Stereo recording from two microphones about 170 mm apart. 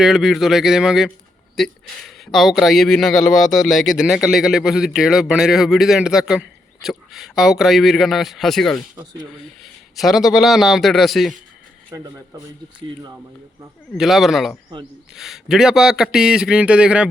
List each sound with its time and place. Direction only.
0.0 s speech: centre (ahead or behind)
9.9 s speech: centre (ahead or behind)
11.9 s speech: 20° right (ahead or behind)
13.9 s speech: centre (ahead or behind)